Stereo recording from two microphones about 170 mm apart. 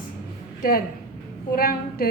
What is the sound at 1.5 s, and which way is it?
Speech, 60° left (ahead or behind).